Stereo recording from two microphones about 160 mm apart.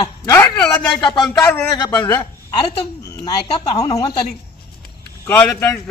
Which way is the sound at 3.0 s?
25° left (ahead or behind).